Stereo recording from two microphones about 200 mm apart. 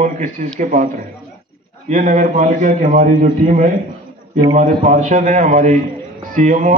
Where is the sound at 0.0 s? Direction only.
35° right (ahead or behind).